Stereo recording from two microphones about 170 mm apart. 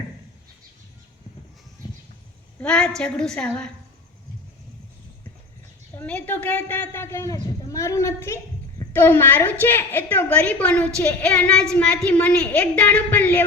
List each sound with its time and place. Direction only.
2.6 s a woman's voice: 5° left (ahead or behind)
6.0 s a woman's voice: 10° left (ahead or behind)